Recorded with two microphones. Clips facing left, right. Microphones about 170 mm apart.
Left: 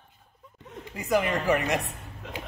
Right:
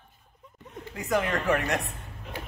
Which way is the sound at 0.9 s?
5° left (ahead or behind).